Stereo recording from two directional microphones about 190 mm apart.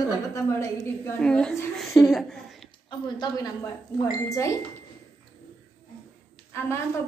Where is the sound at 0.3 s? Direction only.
15° left (ahead or behind).